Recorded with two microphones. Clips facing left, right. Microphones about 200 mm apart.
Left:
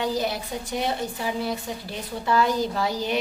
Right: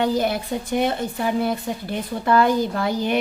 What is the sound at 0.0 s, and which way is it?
A woman's voice, 55° right (ahead or behind).